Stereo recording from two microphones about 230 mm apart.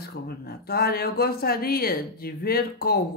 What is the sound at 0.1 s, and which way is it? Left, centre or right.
Speech, left.